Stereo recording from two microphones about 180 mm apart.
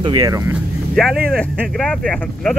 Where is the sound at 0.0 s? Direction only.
25° right (ahead or behind).